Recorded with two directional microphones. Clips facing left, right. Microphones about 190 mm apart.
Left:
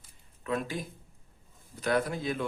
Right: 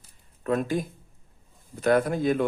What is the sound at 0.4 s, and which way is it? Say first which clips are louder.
Speech: right 7 dB; 50° right (ahead or behind).